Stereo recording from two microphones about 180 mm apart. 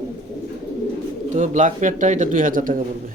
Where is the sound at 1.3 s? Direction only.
45° right (ahead or behind).